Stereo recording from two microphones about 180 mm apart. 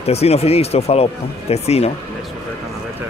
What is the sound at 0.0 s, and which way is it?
Speech, 35° left (ahead or behind).